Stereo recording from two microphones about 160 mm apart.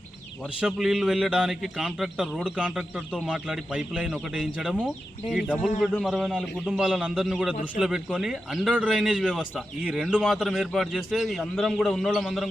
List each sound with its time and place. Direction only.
0.6 s a man's voice: centre (ahead or behind)